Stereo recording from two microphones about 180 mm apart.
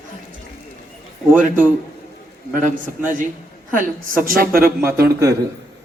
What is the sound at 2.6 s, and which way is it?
A woman's voice, 45° right (ahead or behind).